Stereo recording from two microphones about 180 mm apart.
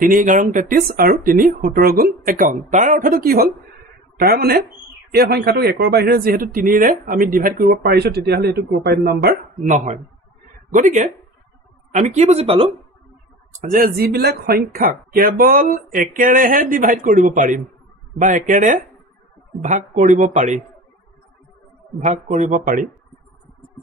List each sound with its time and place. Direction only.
0.0 s a man's voice: 50° right (ahead or behind)
13.7 s speech: 55° right (ahead or behind)
22.0 s speech: 40° right (ahead or behind)